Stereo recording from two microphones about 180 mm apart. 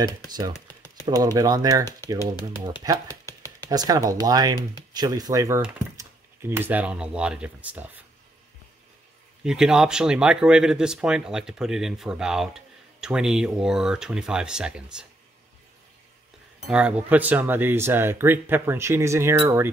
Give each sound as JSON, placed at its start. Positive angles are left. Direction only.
{"t": 1.0, "sound": "speech", "side_deg": -20}
{"t": 3.3, "sound": "a sound", "side_deg": 15}
{"t": 3.7, "sound": "speech", "side_deg": -20}
{"t": 9.4, "sound": "speech", "side_deg": -5}
{"t": 16.6, "sound": "speech", "side_deg": -5}